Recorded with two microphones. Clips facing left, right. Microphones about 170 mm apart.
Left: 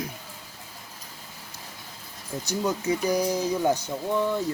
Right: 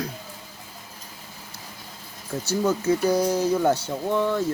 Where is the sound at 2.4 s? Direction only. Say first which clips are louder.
Right 4 dB; 15° left (ahead or behind).